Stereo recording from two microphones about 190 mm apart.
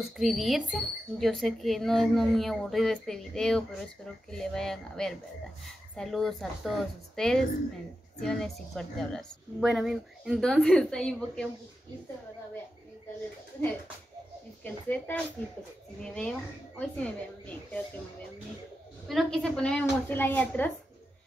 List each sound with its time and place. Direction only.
0.2 s speech: centre (ahead or behind)
14.6 s a woman's voice: 10° left (ahead or behind)
19.0 s a woman's voice: centre (ahead or behind)